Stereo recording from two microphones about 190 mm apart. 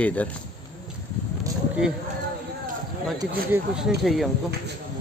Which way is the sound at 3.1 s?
20° right (ahead or behind).